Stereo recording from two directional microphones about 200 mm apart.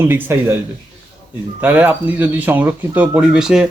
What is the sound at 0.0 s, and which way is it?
Speech, 10° right (ahead or behind).